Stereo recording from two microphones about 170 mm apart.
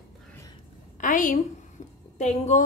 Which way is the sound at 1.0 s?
50° left (ahead or behind).